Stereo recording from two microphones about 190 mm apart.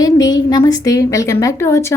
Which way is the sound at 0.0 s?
20° left (ahead or behind).